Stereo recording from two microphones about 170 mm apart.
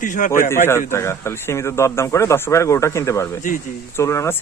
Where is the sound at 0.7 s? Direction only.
15° left (ahead or behind).